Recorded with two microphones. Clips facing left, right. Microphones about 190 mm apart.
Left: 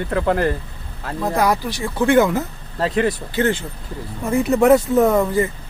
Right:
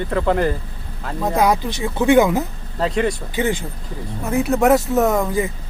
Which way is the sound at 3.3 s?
15° right (ahead or behind).